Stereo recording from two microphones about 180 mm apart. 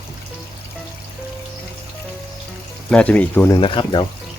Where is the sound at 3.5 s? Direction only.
25° left (ahead or behind).